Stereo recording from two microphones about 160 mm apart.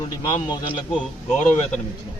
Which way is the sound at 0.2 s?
25° left (ahead or behind).